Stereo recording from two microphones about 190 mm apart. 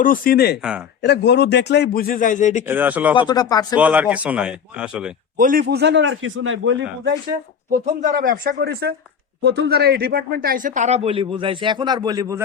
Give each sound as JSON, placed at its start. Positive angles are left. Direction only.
{"t": 0.0, "sound": "speech", "side_deg": 45}
{"t": 2.6, "sound": "a man's voice", "side_deg": -10}
{"t": 3.2, "sound": "speech", "side_deg": 20}
{"t": 3.8, "sound": "a man's voice", "side_deg": -5}
{"t": 5.4, "sound": "a man's voice", "side_deg": -50}
{"t": 8.0, "sound": "speech", "side_deg": -45}